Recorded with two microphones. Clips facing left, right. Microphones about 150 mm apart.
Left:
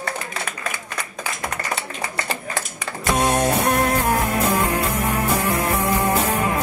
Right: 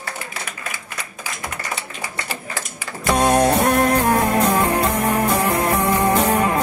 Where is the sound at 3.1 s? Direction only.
25° right (ahead or behind).